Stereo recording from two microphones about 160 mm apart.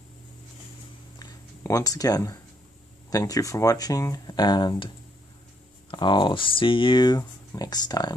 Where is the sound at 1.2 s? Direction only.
20° left (ahead or behind).